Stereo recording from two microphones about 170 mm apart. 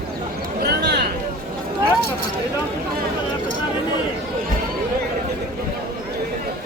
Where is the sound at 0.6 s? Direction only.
70° right (ahead or behind).